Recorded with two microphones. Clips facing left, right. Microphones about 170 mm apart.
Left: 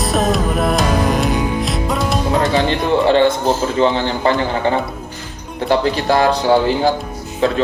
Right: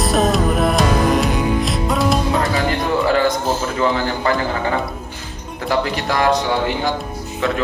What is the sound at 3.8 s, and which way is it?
A man's voice, 25° left (ahead or behind).